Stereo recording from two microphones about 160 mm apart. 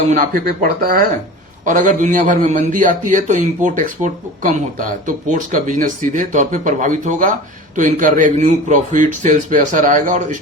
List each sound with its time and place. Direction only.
0.1 s a man's voice: 60° right (ahead or behind)